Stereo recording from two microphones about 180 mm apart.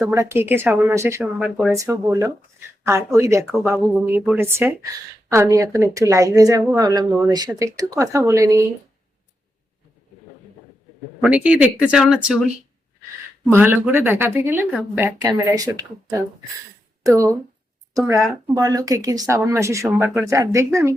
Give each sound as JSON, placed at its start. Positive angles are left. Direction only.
{"t": 0.0, "sound": "speech", "side_deg": -15}
{"t": 11.2, "sound": "speech", "side_deg": -5}
{"t": 13.5, "sound": "speech", "side_deg": -10}
{"t": 17.0, "sound": "speech", "side_deg": -15}